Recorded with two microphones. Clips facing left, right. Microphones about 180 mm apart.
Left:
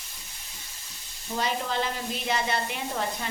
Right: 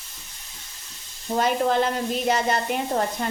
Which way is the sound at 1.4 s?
50° right (ahead or behind).